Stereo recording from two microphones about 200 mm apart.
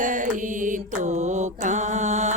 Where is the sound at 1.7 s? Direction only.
35° right (ahead or behind).